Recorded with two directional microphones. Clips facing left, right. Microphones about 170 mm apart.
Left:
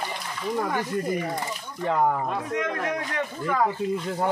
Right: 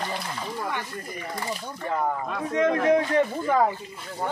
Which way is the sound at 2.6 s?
30° right (ahead or behind).